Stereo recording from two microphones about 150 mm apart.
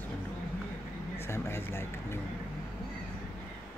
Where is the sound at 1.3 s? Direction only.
15° left (ahead or behind).